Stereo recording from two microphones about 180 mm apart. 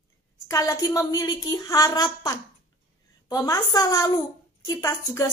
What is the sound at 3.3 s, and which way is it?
A woman's voice, 20° left (ahead or behind).